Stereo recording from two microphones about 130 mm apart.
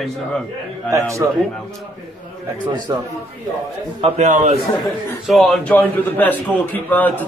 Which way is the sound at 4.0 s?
70° right (ahead or behind).